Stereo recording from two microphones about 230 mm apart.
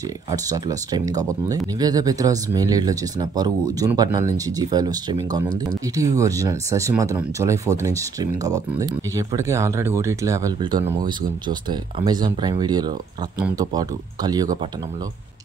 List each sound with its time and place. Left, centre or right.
0.3 s speech: centre